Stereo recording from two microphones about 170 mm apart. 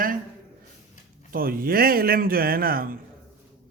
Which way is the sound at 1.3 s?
60° right (ahead or behind).